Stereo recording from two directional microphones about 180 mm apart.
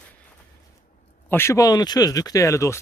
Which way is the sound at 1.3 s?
15° left (ahead or behind).